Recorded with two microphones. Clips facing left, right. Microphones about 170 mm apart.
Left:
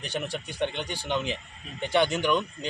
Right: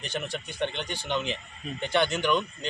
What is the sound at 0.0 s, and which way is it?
Speech, 10° left (ahead or behind).